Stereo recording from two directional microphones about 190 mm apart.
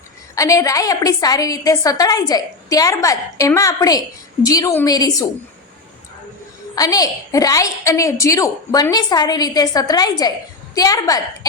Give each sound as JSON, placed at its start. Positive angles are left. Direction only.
{"t": 0.3, "sound": "a woman's voice", "side_deg": 15}
{"t": 6.7, "sound": "a woman's voice", "side_deg": 20}